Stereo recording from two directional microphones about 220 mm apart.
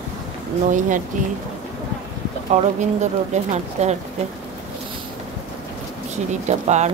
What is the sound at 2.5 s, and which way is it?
Speech, 30° right (ahead or behind).